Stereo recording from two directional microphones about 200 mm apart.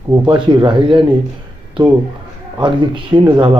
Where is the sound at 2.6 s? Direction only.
25° right (ahead or behind).